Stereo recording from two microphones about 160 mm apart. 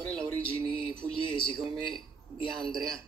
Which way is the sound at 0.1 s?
5° left (ahead or behind).